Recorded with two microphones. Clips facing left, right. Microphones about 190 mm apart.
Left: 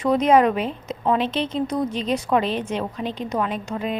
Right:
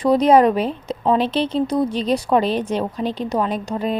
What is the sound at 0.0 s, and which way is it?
A woman's voice, 35° right (ahead or behind).